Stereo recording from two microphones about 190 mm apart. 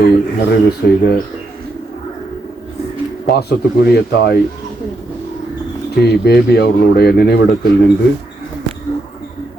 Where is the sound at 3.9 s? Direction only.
60° left (ahead or behind).